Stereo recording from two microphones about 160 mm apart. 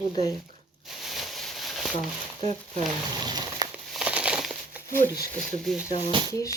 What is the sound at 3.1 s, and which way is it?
Speech, 25° right (ahead or behind).